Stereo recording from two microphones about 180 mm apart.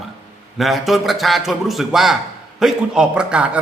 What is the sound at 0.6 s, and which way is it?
A man's voice, centre (ahead or behind).